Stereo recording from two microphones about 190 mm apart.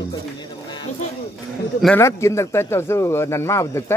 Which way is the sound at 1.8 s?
10° left (ahead or behind).